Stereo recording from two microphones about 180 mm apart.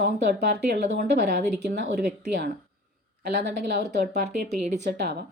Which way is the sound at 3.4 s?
65° right (ahead or behind).